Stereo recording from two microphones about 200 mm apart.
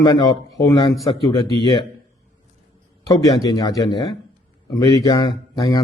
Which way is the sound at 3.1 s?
20° left (ahead or behind).